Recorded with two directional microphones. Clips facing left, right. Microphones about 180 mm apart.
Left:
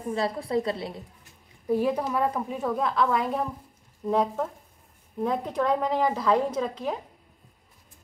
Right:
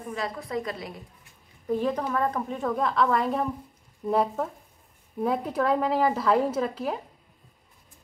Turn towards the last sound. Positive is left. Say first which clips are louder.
# right 1 dB
turn(degrees=-5)  # may be behind; listen again after turning